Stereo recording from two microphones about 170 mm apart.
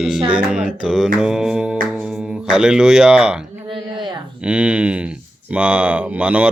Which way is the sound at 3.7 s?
25° right (ahead or behind).